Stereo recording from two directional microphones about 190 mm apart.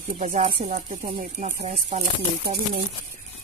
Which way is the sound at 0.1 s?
40° right (ahead or behind).